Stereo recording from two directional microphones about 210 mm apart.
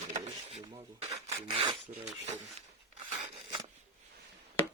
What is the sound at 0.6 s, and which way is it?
Filing, 20° right (ahead or behind).